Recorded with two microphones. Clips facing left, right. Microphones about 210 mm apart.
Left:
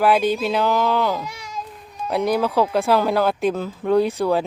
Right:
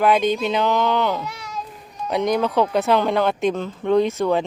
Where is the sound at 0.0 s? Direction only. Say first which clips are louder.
Even; 10° left (ahead or behind).